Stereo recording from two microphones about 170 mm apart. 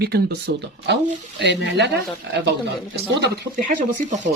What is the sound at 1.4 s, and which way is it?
Speech, 85° right.